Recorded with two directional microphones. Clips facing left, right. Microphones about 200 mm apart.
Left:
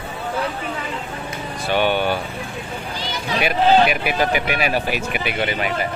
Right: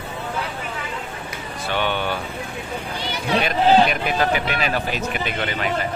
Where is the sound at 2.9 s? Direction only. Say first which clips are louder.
Right 1 dB; 65° right (ahead or behind).